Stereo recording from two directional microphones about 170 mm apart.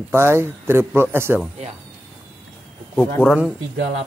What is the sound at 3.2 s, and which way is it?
Speech, 5° right (ahead or behind).